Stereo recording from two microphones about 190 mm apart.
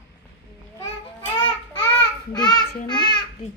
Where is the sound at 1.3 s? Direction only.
25° left (ahead or behind).